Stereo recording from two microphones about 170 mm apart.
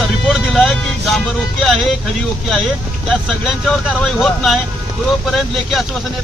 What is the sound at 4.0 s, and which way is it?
Speech, 5° left (ahead or behind).